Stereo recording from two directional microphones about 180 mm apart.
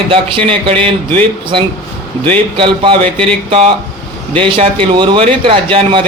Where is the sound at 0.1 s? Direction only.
30° right (ahead or behind).